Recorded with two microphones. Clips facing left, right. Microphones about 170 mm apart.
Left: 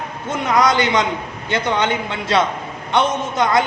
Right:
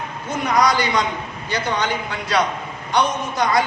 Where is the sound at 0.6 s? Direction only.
20° left (ahead or behind).